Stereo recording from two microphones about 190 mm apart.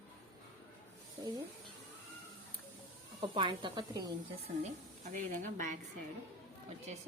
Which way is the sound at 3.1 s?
25° right (ahead or behind).